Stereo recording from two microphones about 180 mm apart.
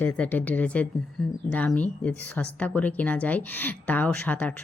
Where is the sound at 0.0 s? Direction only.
10° left (ahead or behind).